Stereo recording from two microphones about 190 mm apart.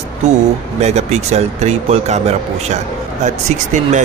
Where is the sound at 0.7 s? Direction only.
35° right (ahead or behind).